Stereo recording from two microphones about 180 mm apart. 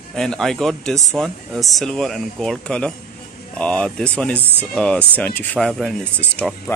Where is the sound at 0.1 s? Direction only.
Centre (ahead or behind).